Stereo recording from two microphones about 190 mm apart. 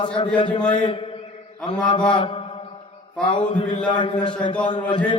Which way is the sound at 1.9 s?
25° left (ahead or behind).